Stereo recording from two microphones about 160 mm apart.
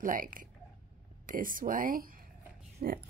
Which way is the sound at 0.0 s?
60° right (ahead or behind).